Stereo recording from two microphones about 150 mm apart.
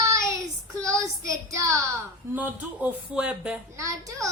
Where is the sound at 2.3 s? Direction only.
10° right (ahead or behind).